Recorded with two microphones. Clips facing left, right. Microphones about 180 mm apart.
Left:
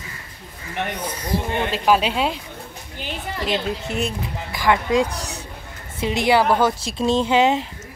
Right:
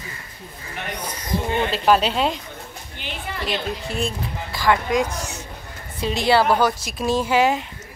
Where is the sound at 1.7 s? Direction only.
10° left (ahead or behind).